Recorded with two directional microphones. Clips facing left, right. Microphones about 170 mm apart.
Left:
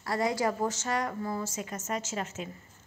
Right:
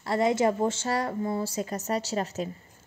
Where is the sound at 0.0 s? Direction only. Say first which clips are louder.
Right 5 dB; 25° right (ahead or behind).